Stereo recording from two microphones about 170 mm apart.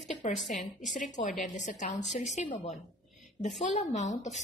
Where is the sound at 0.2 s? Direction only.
45° left (ahead or behind).